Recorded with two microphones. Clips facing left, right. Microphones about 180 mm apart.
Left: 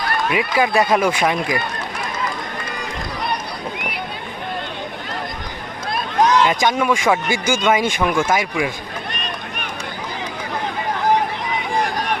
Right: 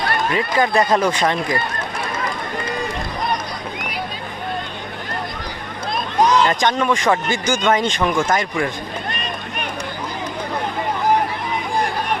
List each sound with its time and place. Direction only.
0.3 s speech: 10° left (ahead or behind)
6.4 s speech: 10° left (ahead or behind)